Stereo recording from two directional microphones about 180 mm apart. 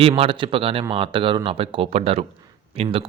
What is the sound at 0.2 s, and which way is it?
Speech, 30° right (ahead or behind).